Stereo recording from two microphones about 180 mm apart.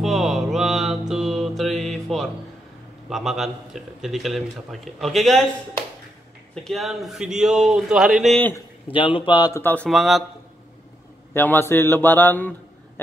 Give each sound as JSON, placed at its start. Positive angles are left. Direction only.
{"t": 0.0, "sound": "music", "side_deg": 0}
{"t": 3.1, "sound": "speech", "side_deg": 0}
{"t": 6.5, "sound": "speech", "side_deg": 0}
{"t": 8.9, "sound": "a man's voice", "side_deg": 30}
{"t": 9.6, "sound": "speech", "side_deg": 10}
{"t": 9.8, "sound": "speech", "side_deg": 0}
{"t": 11.3, "sound": "a man's voice", "side_deg": 10}